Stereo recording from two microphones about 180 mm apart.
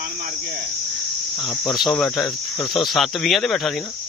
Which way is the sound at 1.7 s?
Centre (ahead or behind).